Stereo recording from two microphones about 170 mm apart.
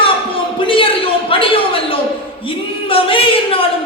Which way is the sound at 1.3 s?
30° left (ahead or behind).